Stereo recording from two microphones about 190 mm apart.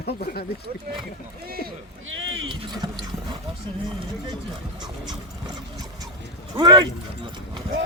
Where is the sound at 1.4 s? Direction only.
50° right (ahead or behind).